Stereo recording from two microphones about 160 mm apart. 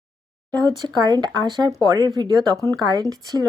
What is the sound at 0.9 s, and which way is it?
Speech, 25° right (ahead or behind).